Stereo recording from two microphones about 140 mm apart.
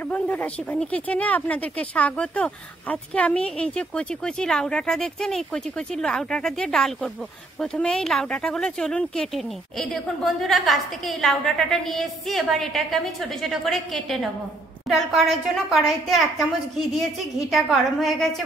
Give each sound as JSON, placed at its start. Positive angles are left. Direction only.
{"t": 0.1, "sound": "speech", "side_deg": 10}